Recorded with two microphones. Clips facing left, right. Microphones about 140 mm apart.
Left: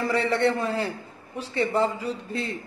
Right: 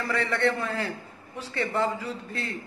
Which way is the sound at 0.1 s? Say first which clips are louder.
Left 2 dB; 20° left (ahead or behind).